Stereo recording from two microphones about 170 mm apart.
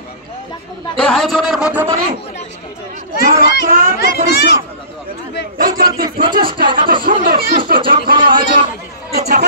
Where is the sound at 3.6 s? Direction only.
55° right (ahead or behind).